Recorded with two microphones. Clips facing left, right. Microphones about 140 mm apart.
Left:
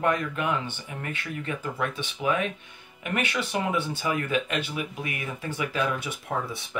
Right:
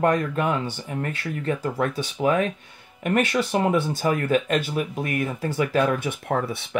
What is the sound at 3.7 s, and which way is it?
Speech, 45° right (ahead or behind).